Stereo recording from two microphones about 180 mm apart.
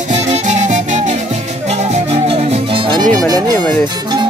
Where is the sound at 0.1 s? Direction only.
40° right (ahead or behind).